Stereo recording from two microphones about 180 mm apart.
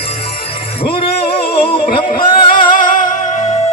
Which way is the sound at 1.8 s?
50° left (ahead or behind).